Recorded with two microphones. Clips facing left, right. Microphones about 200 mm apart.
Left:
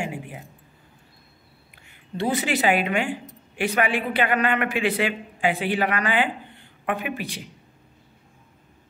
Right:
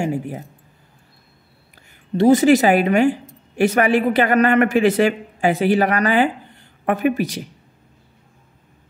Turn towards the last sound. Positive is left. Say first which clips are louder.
# right 10 dB
turn(degrees=-40)  # may be behind; listen again after turning